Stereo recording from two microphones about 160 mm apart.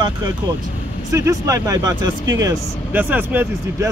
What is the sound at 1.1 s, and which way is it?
Speech, 20° right (ahead or behind).